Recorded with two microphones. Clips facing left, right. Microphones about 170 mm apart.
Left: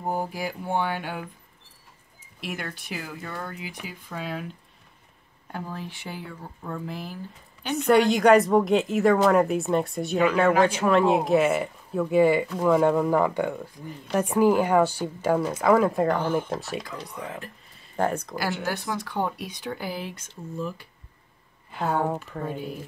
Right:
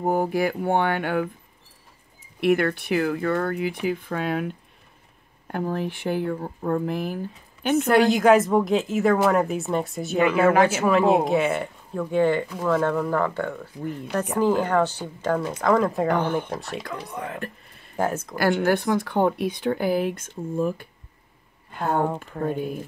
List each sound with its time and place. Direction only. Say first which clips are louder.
0.0 s speech: right 7 dB; 60° right (ahead or behind)
2.4 s speech: right 14 dB; 60° right (ahead or behind)
7.7 s a woman's voice: right 1 dB; centre (ahead or behind)
16.8 s speech: right 4 dB; 60° right (ahead or behind)
17.9 s a woman's voice: even; 5° right (ahead or behind)
18.4 s speech: right 11 dB; 55° right (ahead or behind)
21.7 s a woman's voice: right 2 dB; 5° left (ahead or behind)
22.4 s speech: right 6 dB; 55° right (ahead or behind)